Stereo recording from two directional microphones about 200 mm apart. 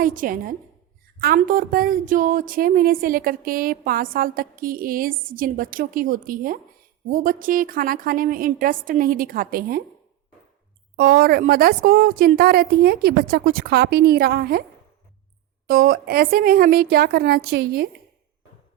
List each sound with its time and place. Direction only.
0.0 s a woman's voice: 45° right (ahead or behind)
10.9 s a woman's voice: 45° right (ahead or behind)
15.6 s a woman's voice: 45° right (ahead or behind)